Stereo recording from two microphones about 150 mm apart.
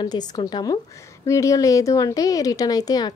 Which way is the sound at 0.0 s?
25° left (ahead or behind).